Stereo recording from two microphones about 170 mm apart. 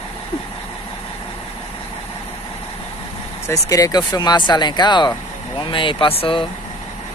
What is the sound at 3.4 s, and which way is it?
Speech, 20° left (ahead or behind).